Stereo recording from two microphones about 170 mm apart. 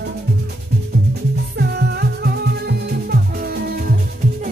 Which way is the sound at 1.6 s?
70° right (ahead or behind).